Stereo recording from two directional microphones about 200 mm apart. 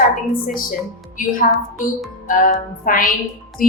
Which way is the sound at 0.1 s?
45° left (ahead or behind).